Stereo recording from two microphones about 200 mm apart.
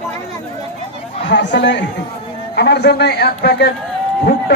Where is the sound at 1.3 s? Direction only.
60° left (ahead or behind).